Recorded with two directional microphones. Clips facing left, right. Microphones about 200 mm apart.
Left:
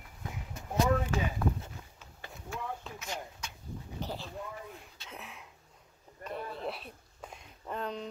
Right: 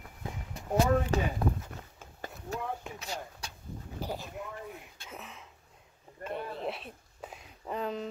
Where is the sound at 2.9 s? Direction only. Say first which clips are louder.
Right 1 dB; 35° right (ahead or behind).